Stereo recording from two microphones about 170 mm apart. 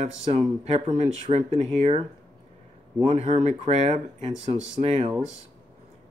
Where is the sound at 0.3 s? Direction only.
35° right (ahead or behind).